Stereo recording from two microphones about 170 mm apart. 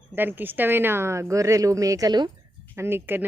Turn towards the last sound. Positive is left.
turn(degrees=-10)  # may be behind; listen again after turning